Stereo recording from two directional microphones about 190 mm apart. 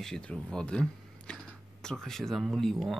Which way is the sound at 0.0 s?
5° left (ahead or behind).